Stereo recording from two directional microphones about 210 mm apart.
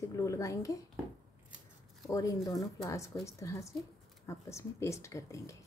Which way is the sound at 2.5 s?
15° left (ahead or behind).